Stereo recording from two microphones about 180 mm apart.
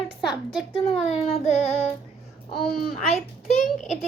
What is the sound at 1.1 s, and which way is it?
Child singing, 40° left (ahead or behind).